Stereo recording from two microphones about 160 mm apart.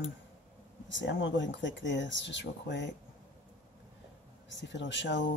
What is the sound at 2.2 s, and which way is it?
Speech, 90° left.